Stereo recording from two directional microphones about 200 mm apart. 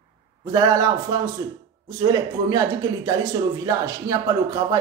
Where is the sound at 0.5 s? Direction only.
20° right (ahead or behind).